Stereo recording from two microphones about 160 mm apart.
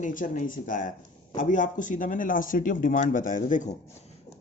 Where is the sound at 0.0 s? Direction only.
55° left (ahead or behind).